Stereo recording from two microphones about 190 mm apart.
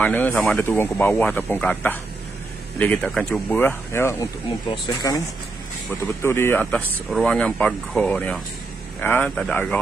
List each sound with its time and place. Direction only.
0.0 s speech: 10° left (ahead or behind)
6.2 s speech: 15° left (ahead or behind)